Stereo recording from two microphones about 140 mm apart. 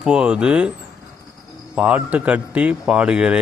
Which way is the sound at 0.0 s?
5° right (ahead or behind).